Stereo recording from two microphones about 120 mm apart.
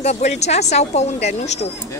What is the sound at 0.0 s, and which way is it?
Speech, 65° left (ahead or behind).